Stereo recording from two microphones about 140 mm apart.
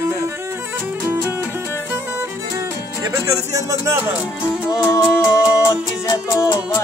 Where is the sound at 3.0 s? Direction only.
25° right (ahead or behind).